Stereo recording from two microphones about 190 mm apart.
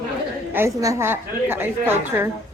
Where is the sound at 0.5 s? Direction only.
15° right (ahead or behind).